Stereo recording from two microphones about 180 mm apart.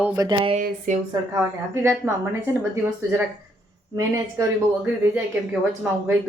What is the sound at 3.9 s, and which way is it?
Speech, 15° right (ahead or behind).